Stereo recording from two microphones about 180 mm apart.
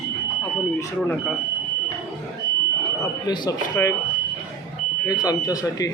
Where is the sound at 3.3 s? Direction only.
20° left (ahead or behind).